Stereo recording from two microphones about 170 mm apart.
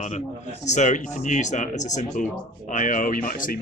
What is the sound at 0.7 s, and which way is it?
Speech, 45° left (ahead or behind).